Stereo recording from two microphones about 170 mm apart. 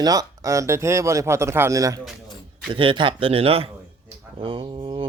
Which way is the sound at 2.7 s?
30° right (ahead or behind).